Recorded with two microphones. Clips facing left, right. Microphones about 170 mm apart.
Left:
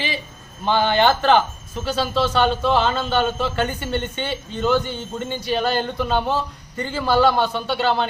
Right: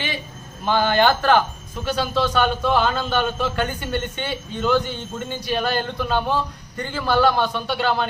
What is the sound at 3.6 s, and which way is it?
A man's voice, 5° left (ahead or behind).